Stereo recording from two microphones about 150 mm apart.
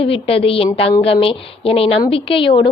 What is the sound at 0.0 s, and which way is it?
A woman's voice, 40° left (ahead or behind).